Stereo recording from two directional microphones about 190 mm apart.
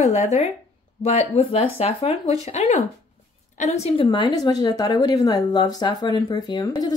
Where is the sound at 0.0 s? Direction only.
35° left (ahead or behind).